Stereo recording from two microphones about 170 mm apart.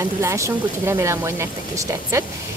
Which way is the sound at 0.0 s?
15° right (ahead or behind).